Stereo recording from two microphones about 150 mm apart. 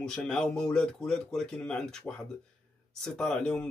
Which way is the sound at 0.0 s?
5° left (ahead or behind).